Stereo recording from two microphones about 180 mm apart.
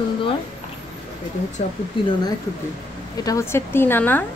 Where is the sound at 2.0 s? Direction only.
30° left (ahead or behind).